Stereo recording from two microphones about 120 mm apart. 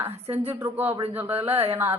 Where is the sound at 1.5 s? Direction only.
55° right (ahead or behind).